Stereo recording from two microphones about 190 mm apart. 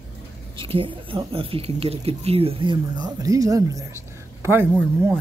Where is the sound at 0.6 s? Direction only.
25° right (ahead or behind).